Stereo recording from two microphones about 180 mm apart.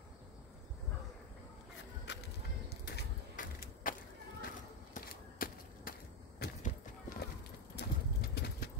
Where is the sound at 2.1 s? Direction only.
70° left (ahead or behind).